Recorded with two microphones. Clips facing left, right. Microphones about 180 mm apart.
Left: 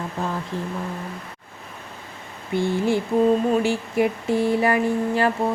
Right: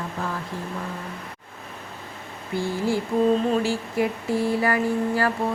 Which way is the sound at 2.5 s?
20° left (ahead or behind).